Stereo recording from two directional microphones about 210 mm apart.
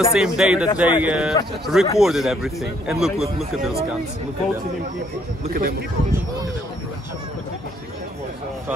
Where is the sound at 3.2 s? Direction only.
30° right (ahead or behind).